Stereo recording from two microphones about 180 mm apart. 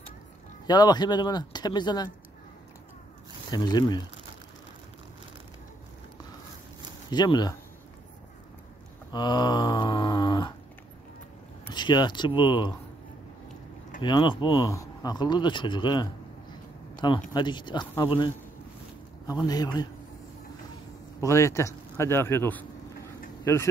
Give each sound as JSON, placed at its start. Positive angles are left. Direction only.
{"t": 0.7, "sound": "speech", "side_deg": 25}
{"t": 3.4, "sound": "speech", "side_deg": 20}
{"t": 7.1, "sound": "speech", "side_deg": 25}
{"t": 9.1, "sound": "speech", "side_deg": 25}
{"t": 11.7, "sound": "speech", "side_deg": 25}
{"t": 14.0, "sound": "speech", "side_deg": 25}
{"t": 16.9, "sound": "a sound", "side_deg": 25}
{"t": 17.3, "sound": "speech", "side_deg": 25}
{"t": 21.2, "sound": "a man's voice", "side_deg": 15}